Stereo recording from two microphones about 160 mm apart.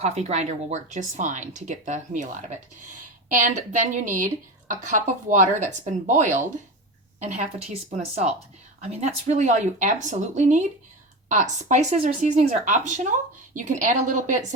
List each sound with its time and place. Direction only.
0.0 s a woman's voice: 45° right (ahead or behind)